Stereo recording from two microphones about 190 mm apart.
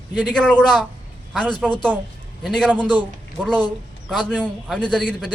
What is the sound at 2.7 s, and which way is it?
Speech, 25° left (ahead or behind).